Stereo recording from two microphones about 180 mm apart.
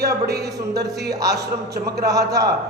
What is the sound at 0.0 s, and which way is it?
A man's voice, 60° right (ahead or behind).